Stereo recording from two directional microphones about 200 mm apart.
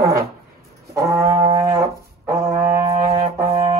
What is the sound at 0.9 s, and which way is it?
Brass instrument, 15° right (ahead or behind).